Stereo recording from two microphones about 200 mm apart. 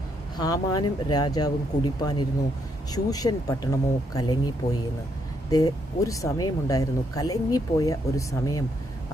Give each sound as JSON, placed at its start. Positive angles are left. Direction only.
{"t": 0.3, "sound": "speech", "side_deg": 20}